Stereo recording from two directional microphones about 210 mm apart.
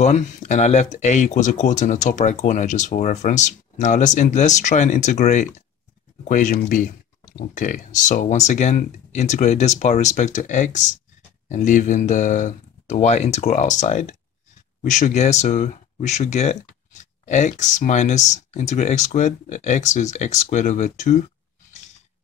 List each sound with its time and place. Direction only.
0.0 s speech: 35° left (ahead or behind)